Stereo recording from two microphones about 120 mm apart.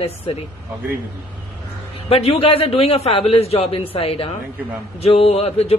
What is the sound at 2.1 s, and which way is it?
Speech, 55° left (ahead or behind).